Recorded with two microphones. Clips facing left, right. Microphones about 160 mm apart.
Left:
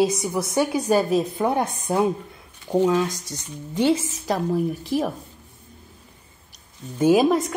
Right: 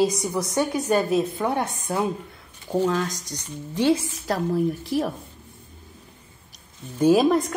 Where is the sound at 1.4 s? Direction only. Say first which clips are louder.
Left 3 dB; 25° left (ahead or behind).